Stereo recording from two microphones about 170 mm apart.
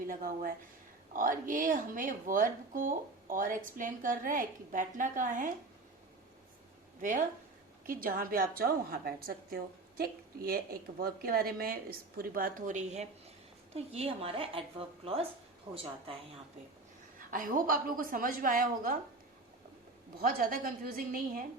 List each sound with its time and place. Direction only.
0.1 s speech: 55° right (ahead or behind)
7.0 s a woman's voice: 50° right (ahead or behind); by 16.1 s 35° right (ahead or behind)
17.2 s a woman's voice: 55° right (ahead or behind)
20.2 s a woman's voice: 55° right (ahead or behind)